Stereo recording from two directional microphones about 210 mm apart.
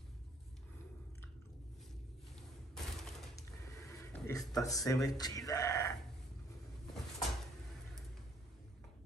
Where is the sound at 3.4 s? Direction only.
15° left (ahead or behind).